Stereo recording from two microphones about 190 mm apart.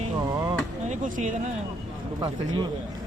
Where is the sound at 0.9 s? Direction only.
40° right (ahead or behind).